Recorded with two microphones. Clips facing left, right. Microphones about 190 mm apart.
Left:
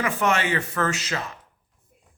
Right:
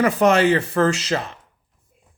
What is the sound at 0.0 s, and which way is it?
A man's voice, 35° right (ahead or behind).